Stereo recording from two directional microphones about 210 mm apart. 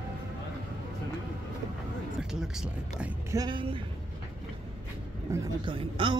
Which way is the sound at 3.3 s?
20° right (ahead or behind).